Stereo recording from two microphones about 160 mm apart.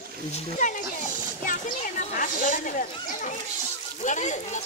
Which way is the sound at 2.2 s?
55° left (ahead or behind).